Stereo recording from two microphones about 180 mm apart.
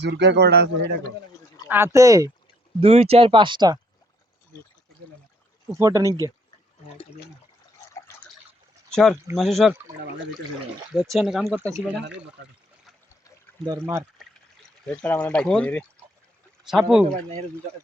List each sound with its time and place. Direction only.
0.0 s a man's voice: 70° right (ahead or behind)
1.6 s speech: 10° right (ahead or behind)
2.8 s speech: 35° right (ahead or behind)
5.7 s speech: 15° right (ahead or behind)
8.9 s speech: centre (ahead or behind)
11.1 s speech: centre (ahead or behind)
11.4 s speech: 15° right (ahead or behind)
13.7 s speech: 15° right (ahead or behind)
14.2 s trickle: centre (ahead or behind)
15.0 s speech: 5° left (ahead or behind)